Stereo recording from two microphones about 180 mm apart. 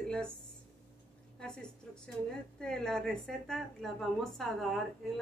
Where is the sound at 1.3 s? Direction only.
5° left (ahead or behind).